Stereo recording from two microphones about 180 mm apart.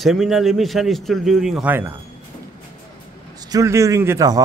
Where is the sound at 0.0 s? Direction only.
Centre (ahead or behind).